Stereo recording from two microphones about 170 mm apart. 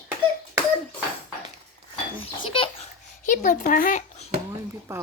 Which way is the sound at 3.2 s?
50° left (ahead or behind).